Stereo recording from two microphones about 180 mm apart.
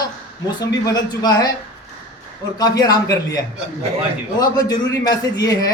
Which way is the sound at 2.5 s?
20° left (ahead or behind).